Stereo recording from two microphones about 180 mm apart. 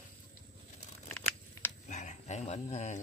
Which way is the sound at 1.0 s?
10° left (ahead or behind).